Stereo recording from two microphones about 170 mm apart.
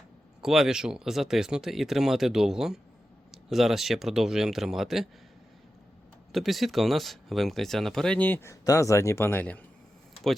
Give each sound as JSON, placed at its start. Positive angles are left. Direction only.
{"t": 0.4, "sound": "speech", "side_deg": 0}
{"t": 6.3, "sound": "speech", "side_deg": 0}